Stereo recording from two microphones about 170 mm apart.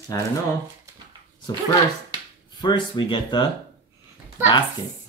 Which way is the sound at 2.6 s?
25° left (ahead or behind).